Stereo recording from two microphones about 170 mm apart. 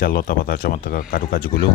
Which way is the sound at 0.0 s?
55° left (ahead or behind).